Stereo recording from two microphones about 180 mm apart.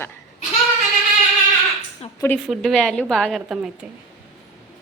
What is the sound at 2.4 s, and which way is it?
A woman's voice, centre (ahead or behind).